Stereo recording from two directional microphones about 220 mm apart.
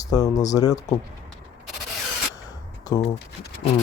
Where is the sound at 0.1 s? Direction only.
15° left (ahead or behind).